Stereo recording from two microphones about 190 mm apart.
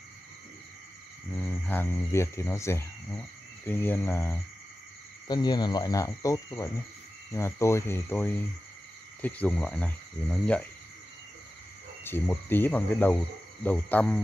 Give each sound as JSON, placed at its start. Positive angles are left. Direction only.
{"t": 1.3, "sound": "speech", "side_deg": 10}
{"t": 12.0, "sound": "speech", "side_deg": 10}